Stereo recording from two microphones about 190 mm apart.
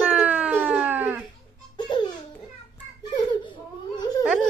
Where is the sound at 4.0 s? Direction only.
20° left (ahead or behind).